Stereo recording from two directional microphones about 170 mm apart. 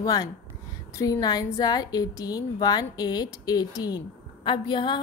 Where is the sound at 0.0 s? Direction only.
20° left (ahead or behind).